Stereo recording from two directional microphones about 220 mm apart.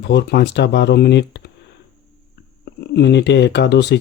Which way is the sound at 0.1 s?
50° left (ahead or behind).